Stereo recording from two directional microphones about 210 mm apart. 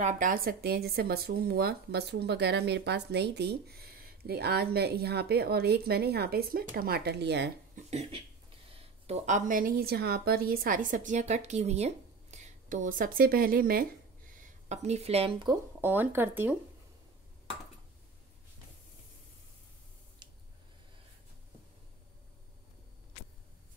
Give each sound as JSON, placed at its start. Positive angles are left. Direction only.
{"t": 0.0, "sound": "speech", "side_deg": -40}
{"t": 7.7, "sound": "a woman's voice", "side_deg": -30}
{"t": 14.4, "sound": "speech", "side_deg": -35}